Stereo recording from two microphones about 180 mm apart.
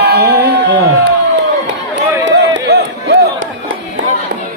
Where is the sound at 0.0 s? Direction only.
60° right (ahead or behind).